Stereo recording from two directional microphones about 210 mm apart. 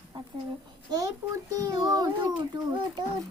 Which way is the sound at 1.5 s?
15° right (ahead or behind).